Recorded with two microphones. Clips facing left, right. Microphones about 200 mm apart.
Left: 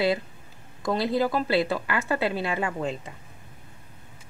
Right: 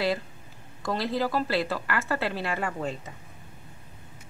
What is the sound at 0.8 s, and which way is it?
Speech, 20° left (ahead or behind).